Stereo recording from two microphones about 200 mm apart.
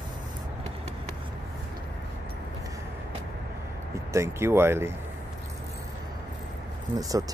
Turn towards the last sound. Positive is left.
turn(degrees=-15)  # may be behind; listen again after turning